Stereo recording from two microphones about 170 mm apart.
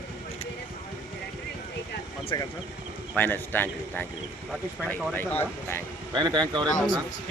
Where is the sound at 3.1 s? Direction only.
10° left (ahead or behind).